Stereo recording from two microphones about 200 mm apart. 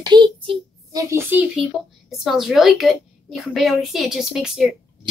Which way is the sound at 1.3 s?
10° right (ahead or behind).